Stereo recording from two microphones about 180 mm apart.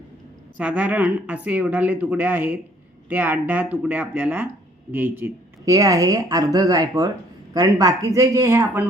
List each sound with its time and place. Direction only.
0.5 s a woman's voice: 10° right (ahead or behind)